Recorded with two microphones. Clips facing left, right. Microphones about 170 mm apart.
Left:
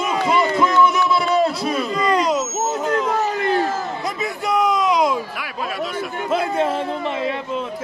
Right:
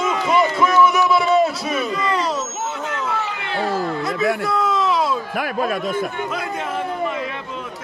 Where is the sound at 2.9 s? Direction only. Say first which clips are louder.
Left 5 dB; 40° left (ahead or behind).